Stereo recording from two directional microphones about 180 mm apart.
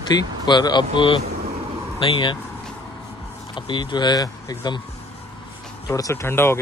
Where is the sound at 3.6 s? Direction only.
25° left (ahead or behind).